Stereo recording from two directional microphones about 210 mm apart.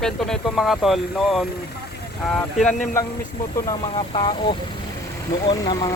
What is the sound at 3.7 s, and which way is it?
Speech, 20° left (ahead or behind).